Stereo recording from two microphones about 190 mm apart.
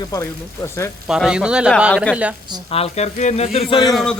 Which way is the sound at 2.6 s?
30° left (ahead or behind).